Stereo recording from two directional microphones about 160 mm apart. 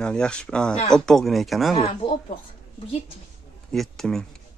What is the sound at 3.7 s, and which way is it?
Speech, 5° left (ahead or behind).